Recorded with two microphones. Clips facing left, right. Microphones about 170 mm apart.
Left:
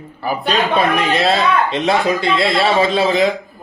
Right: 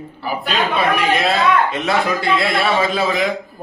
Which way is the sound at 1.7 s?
25° left (ahead or behind).